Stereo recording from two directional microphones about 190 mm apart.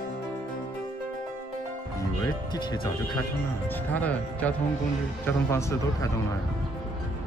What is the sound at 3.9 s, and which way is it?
A man's voice, 10° left (ahead or behind).